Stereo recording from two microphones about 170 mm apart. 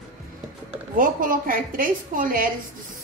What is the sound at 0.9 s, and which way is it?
A woman's voice, 55° right (ahead or behind).